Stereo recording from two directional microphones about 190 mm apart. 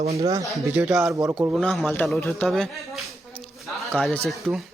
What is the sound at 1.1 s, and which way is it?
Speech, 20° right (ahead or behind).